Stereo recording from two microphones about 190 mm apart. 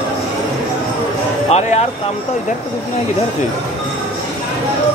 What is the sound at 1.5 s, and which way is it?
Music, 35° left (ahead or behind).